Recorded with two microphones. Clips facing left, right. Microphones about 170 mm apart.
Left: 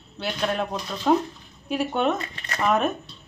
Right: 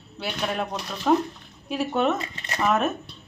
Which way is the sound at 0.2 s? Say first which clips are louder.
Left 2 dB; centre (ahead or behind).